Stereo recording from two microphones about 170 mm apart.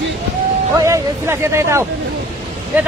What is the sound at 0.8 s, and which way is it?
Speech, 15° right (ahead or behind).